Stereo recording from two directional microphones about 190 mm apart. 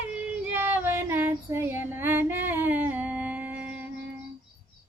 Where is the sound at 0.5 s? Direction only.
10° right (ahead or behind).